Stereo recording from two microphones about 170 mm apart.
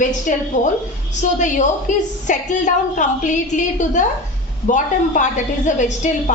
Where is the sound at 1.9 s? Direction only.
45° left (ahead or behind).